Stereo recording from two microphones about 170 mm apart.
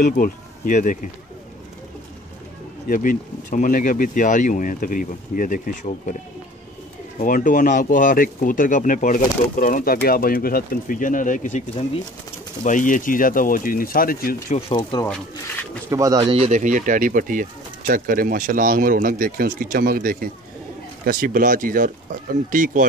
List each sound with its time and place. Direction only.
0.0 s speech: 50° left (ahead or behind)
2.9 s speech: 50° left (ahead or behind)
7.2 s speech: 55° left (ahead or behind)
12.6 s speech: 50° left (ahead or behind)
14.8 s speech: 20° left (ahead or behind)
15.9 s speech: 20° right (ahead or behind)
16.2 s speech: 35° right (ahead or behind); by 22.8 s 50° right (ahead or behind)